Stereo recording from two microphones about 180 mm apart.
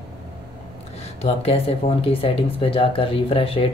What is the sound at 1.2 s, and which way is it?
Speech, 35° left (ahead or behind).